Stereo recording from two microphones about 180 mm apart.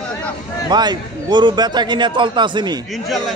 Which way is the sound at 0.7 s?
25° right (ahead or behind).